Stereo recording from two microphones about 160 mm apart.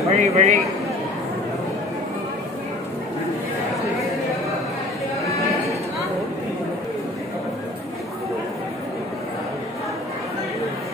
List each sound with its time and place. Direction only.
0.1 s a man's voice: 45° right (ahead or behind)